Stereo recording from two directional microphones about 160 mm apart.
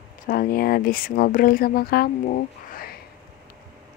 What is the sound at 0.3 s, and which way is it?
Speech, 65° left (ahead or behind).